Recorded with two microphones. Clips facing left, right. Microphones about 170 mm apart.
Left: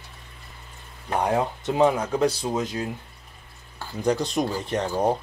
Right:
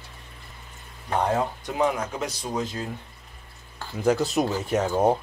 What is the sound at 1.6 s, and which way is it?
Speech, 25° left (ahead or behind).